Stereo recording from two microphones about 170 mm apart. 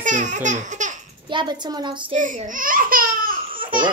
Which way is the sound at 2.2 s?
50° right (ahead or behind).